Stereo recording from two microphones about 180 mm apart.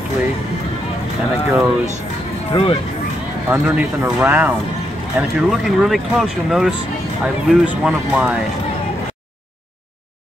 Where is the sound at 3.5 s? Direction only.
5° right (ahead or behind).